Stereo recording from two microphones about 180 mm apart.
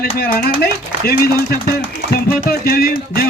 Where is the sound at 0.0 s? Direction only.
55° left (ahead or behind).